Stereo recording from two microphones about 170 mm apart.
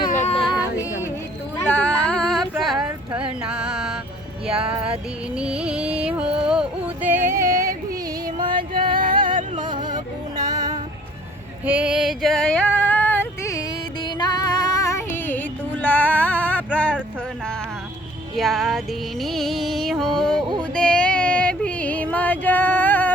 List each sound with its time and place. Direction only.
0.1 s female singing: 45° left (ahead or behind)
0.8 s music: 15° left (ahead or behind)
1.6 s female singing: 10° left (ahead or behind)
3.2 s music: 5° right (ahead or behind)
7.6 s yodeling: 60° right (ahead or behind)
9.0 s music: 55° right (ahead or behind)
9.8 s music: 25° right (ahead or behind)
11.6 s female singing: 10° right (ahead or behind); by 17.0 s 10° left (ahead or behind)
18.3 s music: centre (ahead or behind)
20.6 s female singing: 5° left (ahead or behind)